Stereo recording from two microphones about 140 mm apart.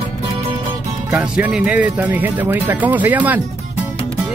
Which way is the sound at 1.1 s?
10° right (ahead or behind).